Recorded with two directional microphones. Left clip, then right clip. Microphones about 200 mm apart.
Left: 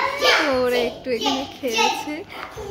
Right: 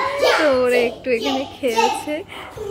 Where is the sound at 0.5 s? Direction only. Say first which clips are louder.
Right 4 dB; 10° right (ahead or behind).